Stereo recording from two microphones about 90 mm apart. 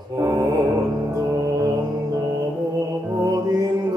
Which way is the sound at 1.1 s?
40° right (ahead or behind).